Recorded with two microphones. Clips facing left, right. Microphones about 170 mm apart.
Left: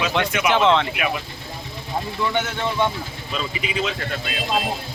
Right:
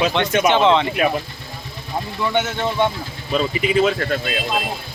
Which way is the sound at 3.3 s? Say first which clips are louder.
Right 9 dB; 45° right (ahead or behind).